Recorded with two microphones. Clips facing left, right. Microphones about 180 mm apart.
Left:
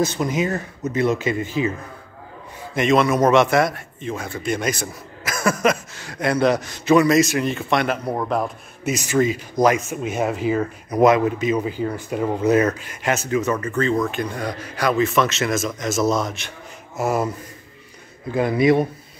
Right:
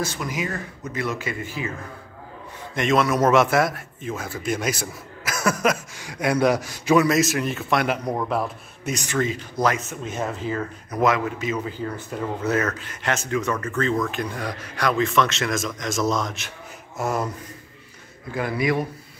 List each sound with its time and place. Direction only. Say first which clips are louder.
0.0 s speech: left 7 dB; 20° left (ahead or behind)
2.7 s a man's voice: left 3 dB; centre (ahead or behind)
8.0 s a man's voice: left 2 dB; 10° left (ahead or behind)
18.3 s speech: left 7 dB; 20° left (ahead or behind)